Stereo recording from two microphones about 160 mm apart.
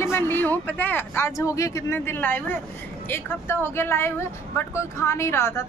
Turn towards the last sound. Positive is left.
turn(degrees=15)  # may be behind; listen again after turning